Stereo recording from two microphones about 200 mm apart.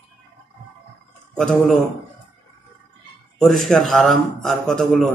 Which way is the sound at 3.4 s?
Centre (ahead or behind).